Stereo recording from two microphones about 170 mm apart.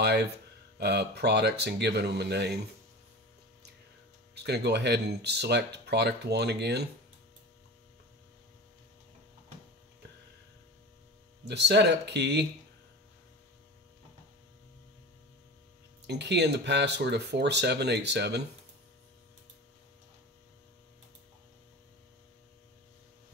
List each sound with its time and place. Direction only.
0.0 s speech: 75° right (ahead or behind)
4.4 s speech: 80° right
11.4 s speech: 85° right
16.1 s speech: 85° right